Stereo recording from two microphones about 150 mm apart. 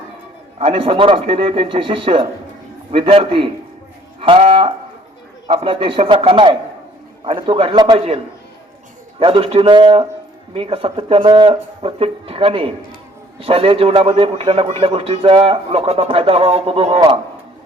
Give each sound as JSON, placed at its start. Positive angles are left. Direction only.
{"t": 0.6, "sound": "a man's voice", "side_deg": -40}